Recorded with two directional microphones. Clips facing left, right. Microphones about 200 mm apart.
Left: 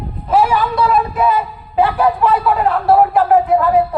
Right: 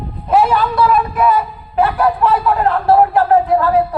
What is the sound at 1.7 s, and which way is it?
Speech, 15° left (ahead or behind).